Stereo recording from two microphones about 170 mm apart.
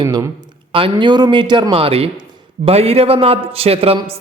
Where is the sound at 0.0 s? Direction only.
25° right (ahead or behind).